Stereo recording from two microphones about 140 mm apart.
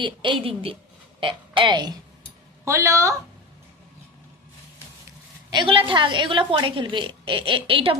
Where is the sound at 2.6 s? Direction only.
20° right (ahead or behind).